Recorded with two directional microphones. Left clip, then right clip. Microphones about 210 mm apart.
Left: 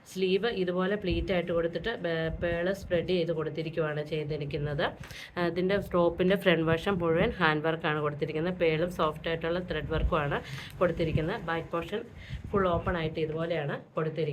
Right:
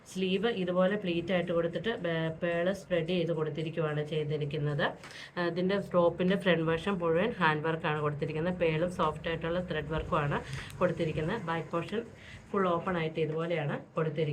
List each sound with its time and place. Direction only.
0.2 s speech: 35° left (ahead or behind)